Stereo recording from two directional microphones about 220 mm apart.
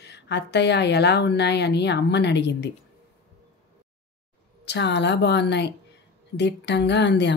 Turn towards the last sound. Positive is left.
turn(degrees=50)  # may be behind; listen again after turning